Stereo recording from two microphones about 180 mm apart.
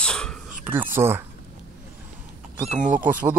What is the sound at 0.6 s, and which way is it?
Speech, 10° right (ahead or behind).